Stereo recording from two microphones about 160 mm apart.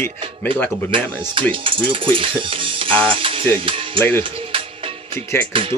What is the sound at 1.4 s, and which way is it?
Music, 35° right (ahead or behind).